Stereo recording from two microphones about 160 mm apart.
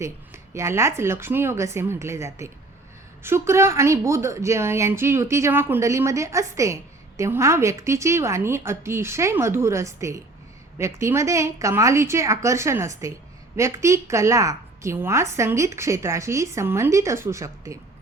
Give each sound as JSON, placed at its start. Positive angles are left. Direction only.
{"t": 0.5, "sound": "a woman's voice", "side_deg": -15}